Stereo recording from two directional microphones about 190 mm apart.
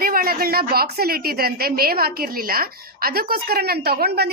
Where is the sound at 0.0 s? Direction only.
50° right (ahead or behind).